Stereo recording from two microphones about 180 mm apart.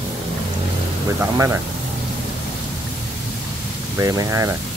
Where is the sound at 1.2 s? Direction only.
15° right (ahead or behind).